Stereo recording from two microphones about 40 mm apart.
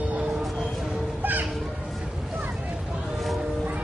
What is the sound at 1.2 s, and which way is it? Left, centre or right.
Music, right.